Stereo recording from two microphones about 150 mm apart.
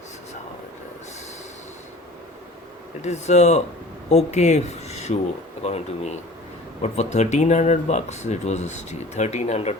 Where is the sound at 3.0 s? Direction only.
50° left (ahead or behind).